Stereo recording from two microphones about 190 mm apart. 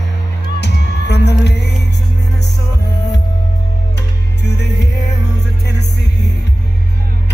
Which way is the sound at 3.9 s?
65° left (ahead or behind).